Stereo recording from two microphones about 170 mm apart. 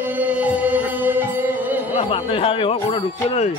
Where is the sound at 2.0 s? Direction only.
35° left (ahead or behind).